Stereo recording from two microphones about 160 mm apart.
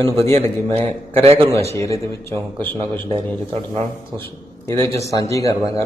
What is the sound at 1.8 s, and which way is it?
Speech, 20° left (ahead or behind).